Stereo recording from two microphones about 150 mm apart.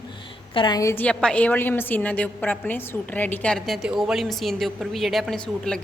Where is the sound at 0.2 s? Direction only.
35° left (ahead or behind).